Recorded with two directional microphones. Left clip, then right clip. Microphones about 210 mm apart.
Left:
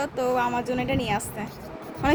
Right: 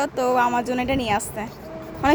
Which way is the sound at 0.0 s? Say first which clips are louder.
Right 4 dB; 10° right (ahead or behind).